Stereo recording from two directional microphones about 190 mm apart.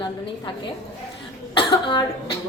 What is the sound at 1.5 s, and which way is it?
Speech, 20° left (ahead or behind).